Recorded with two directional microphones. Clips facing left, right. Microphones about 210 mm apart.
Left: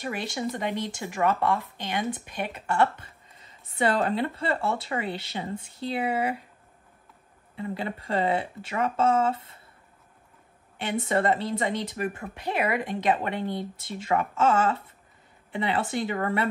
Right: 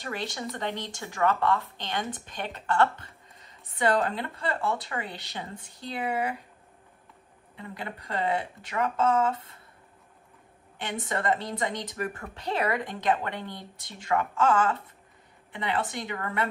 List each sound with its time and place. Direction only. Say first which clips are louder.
0.0 s speech: left 4 dB; 15° left (ahead or behind)
3.7 s speech: left 1 dB; 30° left (ahead or behind)
7.5 s speech: left 7 dB; 30° left (ahead or behind)
11.1 s speech: left 4 dB; 30° left (ahead or behind)